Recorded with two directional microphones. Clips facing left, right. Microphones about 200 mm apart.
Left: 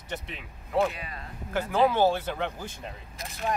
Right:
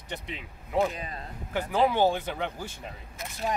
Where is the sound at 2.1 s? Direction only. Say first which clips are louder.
Left 1 dB; 10° right (ahead or behind).